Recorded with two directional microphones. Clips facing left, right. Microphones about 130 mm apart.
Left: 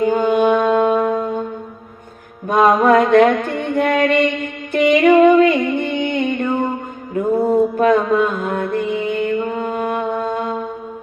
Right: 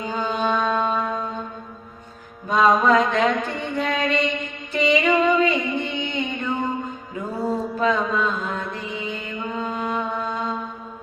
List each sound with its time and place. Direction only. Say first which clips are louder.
0.0 s music: left 10 dB; 55° left (ahead or behind)
2.5 s mantra: left 5 dB; 55° left (ahead or behind)